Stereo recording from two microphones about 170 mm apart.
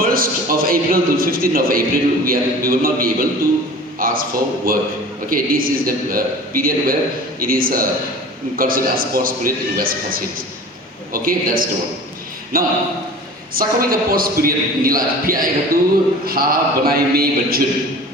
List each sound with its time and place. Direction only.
0.0 s a man's voice: 60° right (ahead or behind)